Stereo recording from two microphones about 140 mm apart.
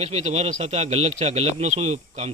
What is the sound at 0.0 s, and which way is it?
Speech, 45° right (ahead or behind).